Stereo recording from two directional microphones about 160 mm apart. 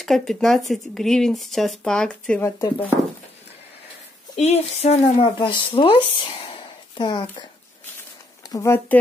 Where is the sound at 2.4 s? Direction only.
15° left (ahead or behind).